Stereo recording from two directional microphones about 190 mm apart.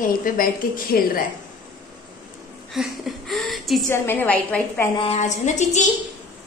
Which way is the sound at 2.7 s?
Centre (ahead or behind).